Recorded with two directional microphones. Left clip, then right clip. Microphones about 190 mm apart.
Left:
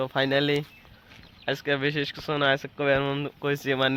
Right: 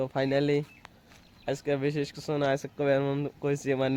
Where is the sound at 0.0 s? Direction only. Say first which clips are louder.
Left 3 dB; centre (ahead or behind).